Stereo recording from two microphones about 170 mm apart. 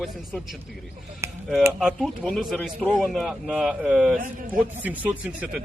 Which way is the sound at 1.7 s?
Centre (ahead or behind).